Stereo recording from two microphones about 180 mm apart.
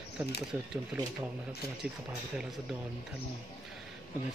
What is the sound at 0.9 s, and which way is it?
Speech, 5° right (ahead or behind).